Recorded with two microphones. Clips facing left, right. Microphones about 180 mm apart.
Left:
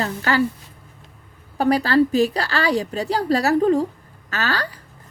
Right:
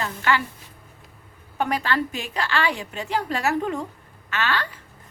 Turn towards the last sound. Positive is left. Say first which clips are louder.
# left 1 dB
turn(degrees=35)  # may be behind; listen again after turning